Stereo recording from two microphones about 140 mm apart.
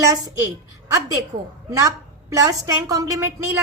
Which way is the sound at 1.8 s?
25° right (ahead or behind).